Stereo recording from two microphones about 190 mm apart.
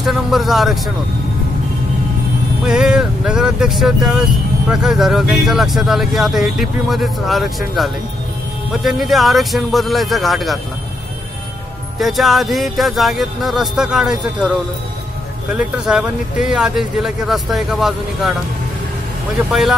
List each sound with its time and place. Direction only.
0.0 s speech: centre (ahead or behind)
2.6 s speech: 5° right (ahead or behind)
12.0 s speech: centre (ahead or behind)